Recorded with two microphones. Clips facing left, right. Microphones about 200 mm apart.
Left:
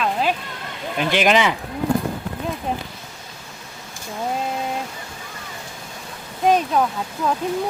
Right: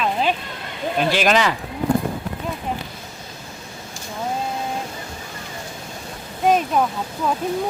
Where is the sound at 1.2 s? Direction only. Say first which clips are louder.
Left 3 dB; 15° left (ahead or behind).